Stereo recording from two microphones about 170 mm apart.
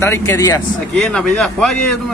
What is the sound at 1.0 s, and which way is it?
Speech, 5° left (ahead or behind).